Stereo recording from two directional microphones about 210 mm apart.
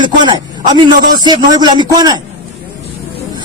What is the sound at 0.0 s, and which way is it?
A man's voice, 20° right (ahead or behind).